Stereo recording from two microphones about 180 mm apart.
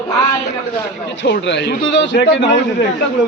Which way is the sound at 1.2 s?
70° left (ahead or behind).